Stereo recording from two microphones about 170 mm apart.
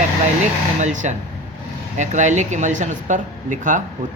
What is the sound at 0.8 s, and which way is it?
Speech, 45° right (ahead or behind).